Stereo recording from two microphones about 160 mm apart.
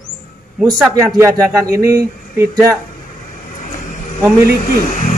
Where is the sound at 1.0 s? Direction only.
15° right (ahead or behind).